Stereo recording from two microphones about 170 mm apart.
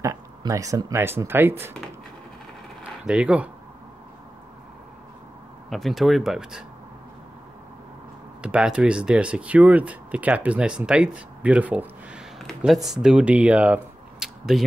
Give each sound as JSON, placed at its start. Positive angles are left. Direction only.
{"t": 0.0, "sound": "speech", "side_deg": -20}
{"t": 3.1, "sound": "speech", "side_deg": -5}
{"t": 5.7, "sound": "speech", "side_deg": 0}
{"t": 8.4, "sound": "speech", "side_deg": -5}
{"t": 14.2, "sound": "a sound", "side_deg": 0}